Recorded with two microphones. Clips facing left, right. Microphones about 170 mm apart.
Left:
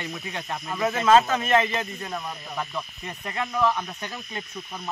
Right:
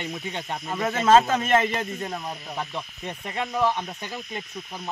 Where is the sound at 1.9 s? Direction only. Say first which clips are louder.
Right 1 dB; 25° right (ahead or behind).